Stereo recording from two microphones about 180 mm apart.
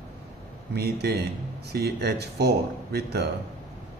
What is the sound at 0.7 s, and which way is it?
Speech, 60° right (ahead or behind).